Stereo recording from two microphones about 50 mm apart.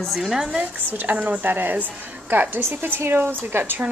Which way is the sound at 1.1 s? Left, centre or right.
Right.